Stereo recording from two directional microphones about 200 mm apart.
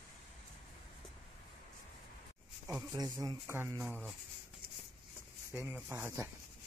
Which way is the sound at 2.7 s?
15° right (ahead or behind).